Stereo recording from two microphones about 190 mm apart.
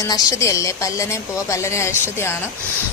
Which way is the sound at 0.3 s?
15° left (ahead or behind).